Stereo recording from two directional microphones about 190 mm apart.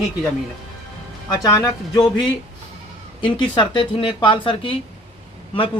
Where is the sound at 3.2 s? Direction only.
25° left (ahead or behind).